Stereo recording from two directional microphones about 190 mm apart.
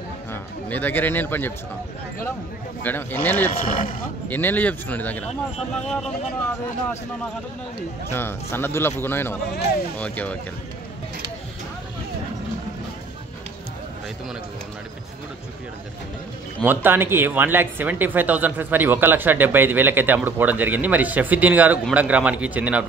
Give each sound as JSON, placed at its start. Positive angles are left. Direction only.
{"t": 0.3, "sound": "a man's voice", "side_deg": 10}
{"t": 2.8, "sound": "speech", "side_deg": 10}
{"t": 3.6, "sound": "speech", "side_deg": 45}
{"t": 4.3, "sound": "speech", "side_deg": 10}
{"t": 8.1, "sound": "speech", "side_deg": 10}
{"t": 16.6, "sound": "speech", "side_deg": -10}